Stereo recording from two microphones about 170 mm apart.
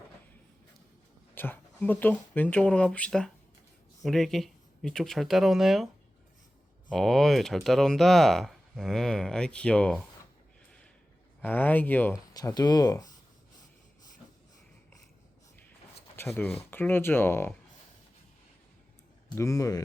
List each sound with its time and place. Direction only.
1.4 s speech: 10° left (ahead or behind)
6.9 s speech: centre (ahead or behind)
11.4 s speech: 10° left (ahead or behind)
12.3 s speech: 20° left (ahead or behind)
16.1 s speech: 15° left (ahead or behind)
19.4 s speech: 20° left (ahead or behind)